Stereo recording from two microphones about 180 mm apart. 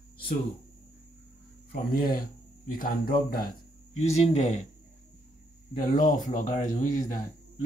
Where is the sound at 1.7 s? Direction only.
50° left (ahead or behind).